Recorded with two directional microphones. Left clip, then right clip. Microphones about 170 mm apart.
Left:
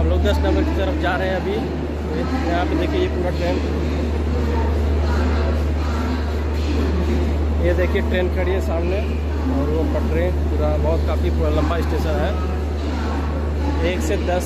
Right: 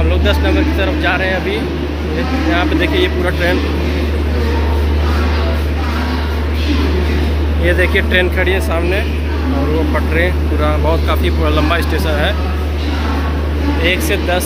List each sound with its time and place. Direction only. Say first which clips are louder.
0.2 s speech: right 6 dB; 20° left (ahead or behind)
2.5 s speech: right 7 dB; 10° left (ahead or behind)
7.6 s speech: right 7 dB; 15° left (ahead or behind)
11.1 s speech: right 6 dB; 10° left (ahead or behind)
13.8 s speech: right 7 dB; 15° left (ahead or behind)